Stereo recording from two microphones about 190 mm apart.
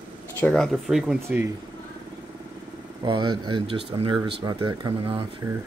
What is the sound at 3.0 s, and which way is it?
Speech, 25° right (ahead or behind).